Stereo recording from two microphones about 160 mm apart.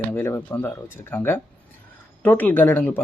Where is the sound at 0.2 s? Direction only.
15° left (ahead or behind).